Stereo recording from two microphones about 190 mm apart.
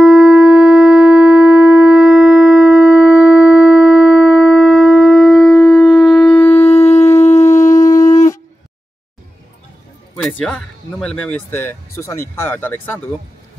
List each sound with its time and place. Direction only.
0.0 s shofar: 5° right (ahead or behind)
6.2 s shofar: 30° left (ahead or behind)
7.6 s shofar: 20° left (ahead or behind)
10.1 s speech: 5° left (ahead or behind)